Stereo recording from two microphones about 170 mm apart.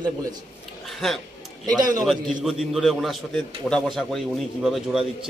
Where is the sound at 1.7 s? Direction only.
20° right (ahead or behind).